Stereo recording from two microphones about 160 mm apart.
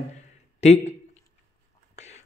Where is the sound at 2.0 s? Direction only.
45° left (ahead or behind).